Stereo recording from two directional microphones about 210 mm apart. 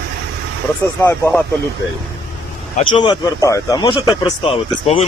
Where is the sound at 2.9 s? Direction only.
20° left (ahead or behind).